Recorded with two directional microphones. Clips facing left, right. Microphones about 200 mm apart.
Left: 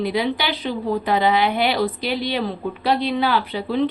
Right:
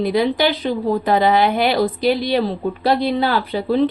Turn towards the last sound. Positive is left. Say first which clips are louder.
# right 3 dB
turn(degrees=-40)  # may be behind; listen again after turning